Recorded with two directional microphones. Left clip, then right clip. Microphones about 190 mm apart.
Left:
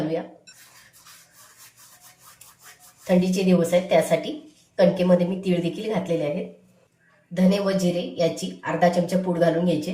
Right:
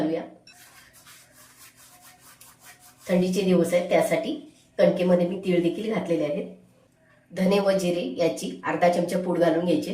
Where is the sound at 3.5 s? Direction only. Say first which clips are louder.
Left 2 dB; 10° right (ahead or behind).